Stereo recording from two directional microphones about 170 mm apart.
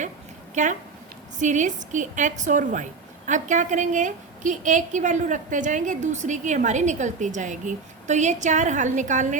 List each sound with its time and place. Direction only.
0.5 s a woman's voice: 45° right (ahead or behind)